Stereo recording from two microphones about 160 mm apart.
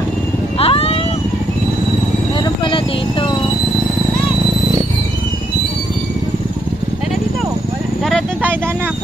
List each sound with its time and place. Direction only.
0.6 s vehicle: 35° left (ahead or behind)
2.4 s vehicle: 30° left (ahead or behind)